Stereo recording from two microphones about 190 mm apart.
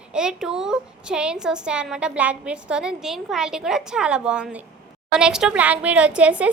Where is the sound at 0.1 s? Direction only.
5° right (ahead or behind).